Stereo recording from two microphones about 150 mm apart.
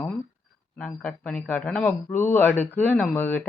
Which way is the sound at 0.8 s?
10° left (ahead or behind).